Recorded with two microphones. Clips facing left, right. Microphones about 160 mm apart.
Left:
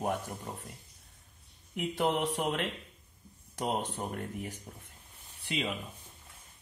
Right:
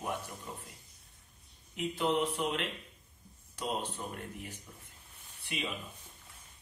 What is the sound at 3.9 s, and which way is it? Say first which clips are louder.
Speech: left 5 dB; 50° left (ahead or behind).